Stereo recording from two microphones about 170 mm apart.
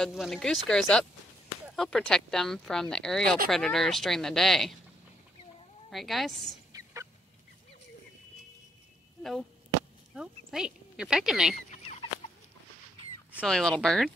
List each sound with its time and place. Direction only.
0.0 s speech: centre (ahead or behind)
5.9 s speech: centre (ahead or behind)
6.7 s fowl: 20° right (ahead or behind)
9.2 s chop: centre (ahead or behind)
10.1 s speech: 5° right (ahead or behind)
11.7 s chicken: 35° left (ahead or behind)
13.5 s speech: centre (ahead or behind)